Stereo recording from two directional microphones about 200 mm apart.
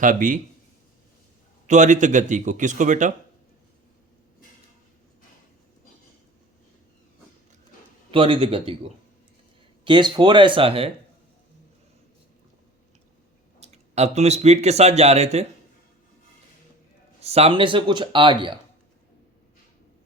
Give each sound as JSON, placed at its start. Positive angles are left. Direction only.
{"t": 0.0, "sound": "a man's voice", "side_deg": -40}
{"t": 1.6, "sound": "a man's voice", "side_deg": -35}
{"t": 8.1, "sound": "speech", "side_deg": -25}
{"t": 13.6, "sound": "speech", "side_deg": -35}
{"t": 17.2, "sound": "speech", "side_deg": -30}